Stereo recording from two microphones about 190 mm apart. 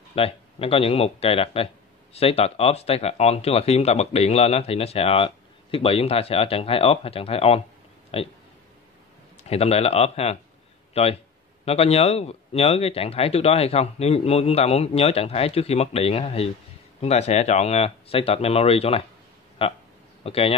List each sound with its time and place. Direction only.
0.1 s speech: 30° left (ahead or behind)
9.4 s speech: 35° left (ahead or behind)